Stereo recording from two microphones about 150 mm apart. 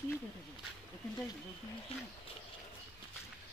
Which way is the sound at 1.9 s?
40° left (ahead or behind).